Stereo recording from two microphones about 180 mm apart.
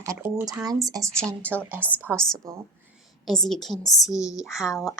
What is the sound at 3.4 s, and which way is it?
Speech, centre (ahead or behind).